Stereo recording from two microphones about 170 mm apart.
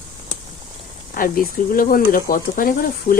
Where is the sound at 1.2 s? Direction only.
55° left (ahead or behind).